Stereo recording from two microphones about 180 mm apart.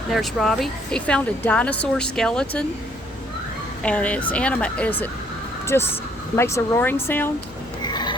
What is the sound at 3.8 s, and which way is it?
Speech, 5° left (ahead or behind).